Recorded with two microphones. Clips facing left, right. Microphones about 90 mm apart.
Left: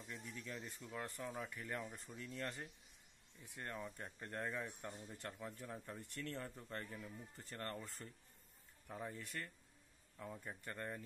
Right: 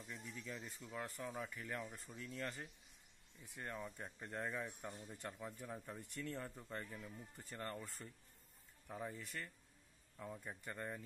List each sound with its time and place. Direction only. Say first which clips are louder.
0.0 s speech: even; centre (ahead or behind)